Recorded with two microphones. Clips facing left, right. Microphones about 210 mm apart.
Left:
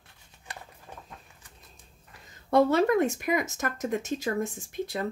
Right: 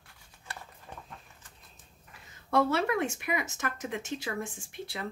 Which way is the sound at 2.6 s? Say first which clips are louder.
Left 6 dB; 40° left (ahead or behind).